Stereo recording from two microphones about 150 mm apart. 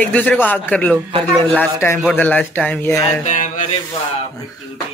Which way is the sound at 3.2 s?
55° left (ahead or behind).